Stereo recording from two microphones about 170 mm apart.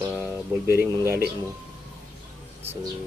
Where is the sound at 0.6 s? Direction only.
15° right (ahead or behind).